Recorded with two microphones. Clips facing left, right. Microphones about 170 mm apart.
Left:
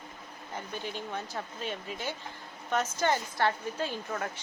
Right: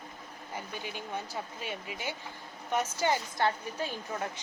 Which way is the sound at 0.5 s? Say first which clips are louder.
Left 2 dB; 10° right (ahead or behind).